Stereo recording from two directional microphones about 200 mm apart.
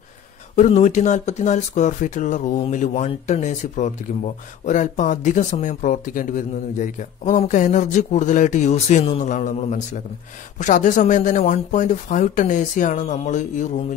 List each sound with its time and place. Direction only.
0.6 s speech: 35° left (ahead or behind)